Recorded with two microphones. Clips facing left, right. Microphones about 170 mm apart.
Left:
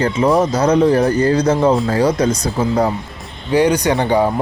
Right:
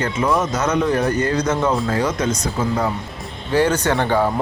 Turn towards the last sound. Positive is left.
turn(degrees=15)  # may be behind; listen again after turning